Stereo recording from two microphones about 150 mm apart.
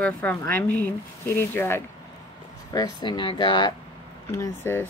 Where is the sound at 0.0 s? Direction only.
10° left (ahead or behind).